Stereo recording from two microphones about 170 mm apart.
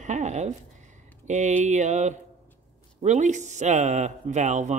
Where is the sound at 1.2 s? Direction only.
45° right (ahead or behind).